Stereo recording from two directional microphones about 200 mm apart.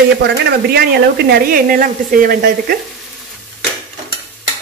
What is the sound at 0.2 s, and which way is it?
Speech, 55° right (ahead or behind).